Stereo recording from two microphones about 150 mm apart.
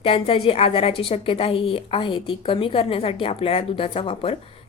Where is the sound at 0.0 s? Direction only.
40° left (ahead or behind).